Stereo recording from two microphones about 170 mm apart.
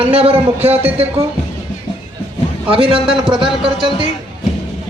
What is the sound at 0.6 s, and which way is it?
Speech, 10° right (ahead or behind).